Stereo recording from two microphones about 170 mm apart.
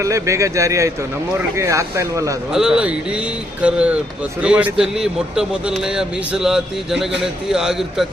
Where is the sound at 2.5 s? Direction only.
5° right (ahead or behind).